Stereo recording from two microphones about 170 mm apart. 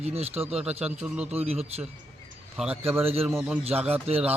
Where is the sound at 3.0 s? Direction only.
35° right (ahead or behind).